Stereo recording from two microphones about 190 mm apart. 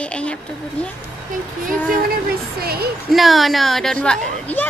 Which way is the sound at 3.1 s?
Centre (ahead or behind).